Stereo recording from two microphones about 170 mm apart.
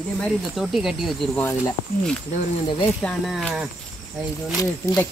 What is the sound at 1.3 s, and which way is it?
Speech, 15° left (ahead or behind).